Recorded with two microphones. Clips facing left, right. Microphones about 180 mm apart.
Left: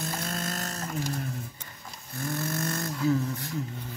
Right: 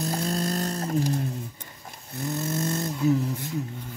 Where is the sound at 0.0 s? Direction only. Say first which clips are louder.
Right 6 dB; 35° right (ahead or behind).